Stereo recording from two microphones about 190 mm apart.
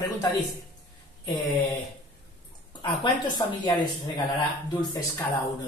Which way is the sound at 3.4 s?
25° left (ahead or behind).